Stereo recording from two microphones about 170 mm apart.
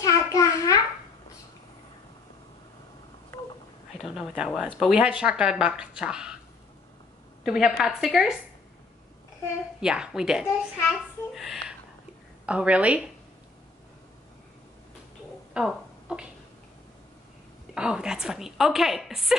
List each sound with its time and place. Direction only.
0.0 s a sound: 20° left (ahead or behind)
4.0 s speech: centre (ahead or behind)
7.4 s speech: centre (ahead or behind)
9.8 s a woman's voice: 5° right (ahead or behind)
15.5 s a sound: 5° right (ahead or behind)
17.7 s speech: 5° right (ahead or behind)